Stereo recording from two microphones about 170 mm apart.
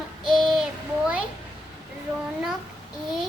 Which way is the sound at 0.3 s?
5° right (ahead or behind).